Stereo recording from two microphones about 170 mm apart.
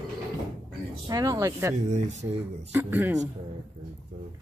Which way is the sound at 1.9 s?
45° right (ahead or behind).